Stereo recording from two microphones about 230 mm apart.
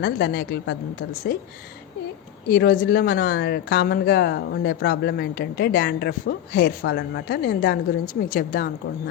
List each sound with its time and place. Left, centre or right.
0.0 s speech: left
2.5 s speech: left